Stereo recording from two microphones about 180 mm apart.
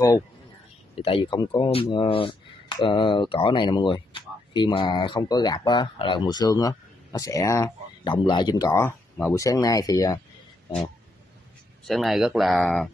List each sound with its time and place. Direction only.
0.9 s speech: 30° left (ahead or behind)
11.8 s speech: centre (ahead or behind)